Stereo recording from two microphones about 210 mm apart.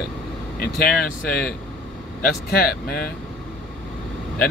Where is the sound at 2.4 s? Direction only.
50° left (ahead or behind).